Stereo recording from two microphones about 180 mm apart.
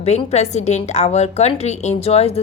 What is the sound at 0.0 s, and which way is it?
Speech, 35° left (ahead or behind).